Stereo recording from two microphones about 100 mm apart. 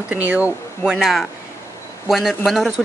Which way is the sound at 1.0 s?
5° right (ahead or behind).